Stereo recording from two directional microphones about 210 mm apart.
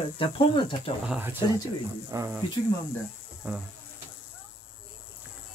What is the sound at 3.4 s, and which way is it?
Speech, 10° right (ahead or behind).